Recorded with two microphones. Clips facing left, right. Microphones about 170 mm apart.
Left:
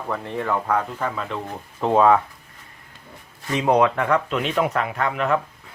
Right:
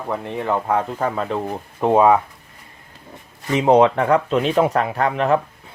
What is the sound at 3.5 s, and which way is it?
Speech, 25° right (ahead or behind).